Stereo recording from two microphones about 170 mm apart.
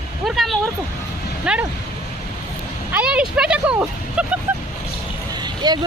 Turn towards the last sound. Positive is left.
turn(degrees=-25)  # may be behind; listen again after turning